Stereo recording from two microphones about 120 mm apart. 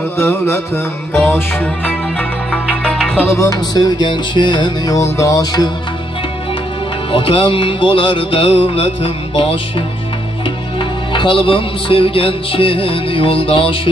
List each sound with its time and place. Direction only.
0.2 s music: 20° left (ahead or behind); by 3.1 s 5° left (ahead or behind)
3.2 s music: 20° left (ahead or behind); by 4.9 s 40° left (ahead or behind)
4.9 s music: 25° left (ahead or behind)
7.1 s music: 50° left (ahead or behind)